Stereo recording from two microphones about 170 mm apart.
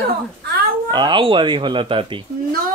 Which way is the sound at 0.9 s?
25° right (ahead or behind).